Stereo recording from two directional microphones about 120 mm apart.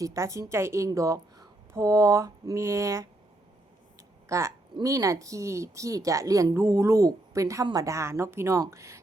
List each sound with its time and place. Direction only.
0.0 s speech: 25° right (ahead or behind)
4.3 s speech: 25° right (ahead or behind)